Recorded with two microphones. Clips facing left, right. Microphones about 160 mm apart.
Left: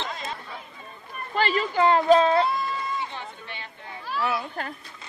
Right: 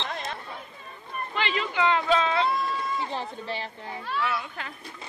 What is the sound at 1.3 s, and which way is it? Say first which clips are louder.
Speech: left 5 dB; 40° left (ahead or behind).